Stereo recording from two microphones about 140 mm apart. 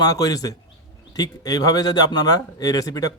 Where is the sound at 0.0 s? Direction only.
25° left (ahead or behind).